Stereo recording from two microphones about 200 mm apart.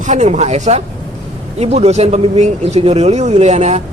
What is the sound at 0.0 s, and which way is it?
Speech, 35° right (ahead or behind).